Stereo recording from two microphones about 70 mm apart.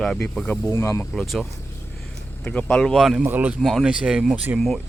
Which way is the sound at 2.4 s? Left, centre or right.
Centre.